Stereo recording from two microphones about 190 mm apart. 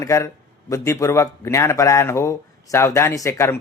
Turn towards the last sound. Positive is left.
turn(degrees=15)  # may be behind; listen again after turning